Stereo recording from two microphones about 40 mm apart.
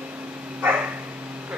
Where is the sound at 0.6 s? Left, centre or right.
Right.